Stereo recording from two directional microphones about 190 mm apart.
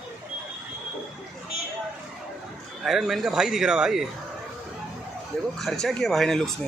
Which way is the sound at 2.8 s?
Centre (ahead or behind).